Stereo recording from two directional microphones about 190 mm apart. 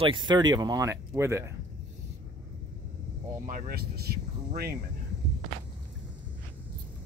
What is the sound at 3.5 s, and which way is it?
Speech, 50° right (ahead or behind).